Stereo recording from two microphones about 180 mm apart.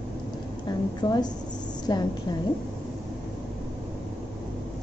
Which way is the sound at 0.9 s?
25° left (ahead or behind).